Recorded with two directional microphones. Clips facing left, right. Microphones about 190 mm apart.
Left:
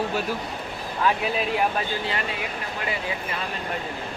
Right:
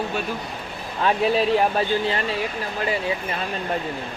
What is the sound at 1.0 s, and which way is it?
Speech, 30° right (ahead or behind).